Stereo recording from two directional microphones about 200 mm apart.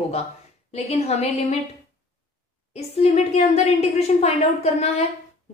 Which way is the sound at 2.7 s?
35° left (ahead or behind).